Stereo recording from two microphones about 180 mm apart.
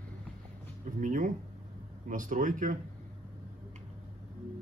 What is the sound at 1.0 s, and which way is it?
A man's voice, 45° right (ahead or behind).